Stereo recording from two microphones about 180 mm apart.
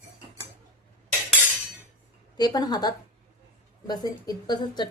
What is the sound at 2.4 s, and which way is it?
A woman's voice, 20° left (ahead or behind).